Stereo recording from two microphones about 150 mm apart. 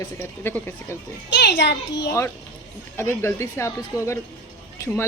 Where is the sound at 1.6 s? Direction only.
90° left.